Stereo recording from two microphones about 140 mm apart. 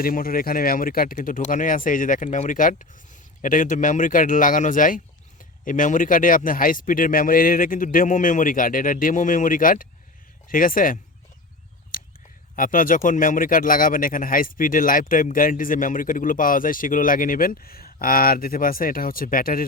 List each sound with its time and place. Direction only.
0.0 s speech: 90° left
11.9 s a sound: 90° left
12.5 s speech: 75° left (ahead or behind)